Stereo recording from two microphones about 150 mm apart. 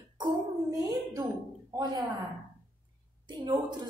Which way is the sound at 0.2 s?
25° right (ahead or behind).